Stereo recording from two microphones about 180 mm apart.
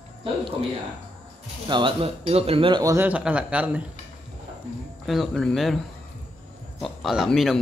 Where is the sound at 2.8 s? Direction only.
15° right (ahead or behind).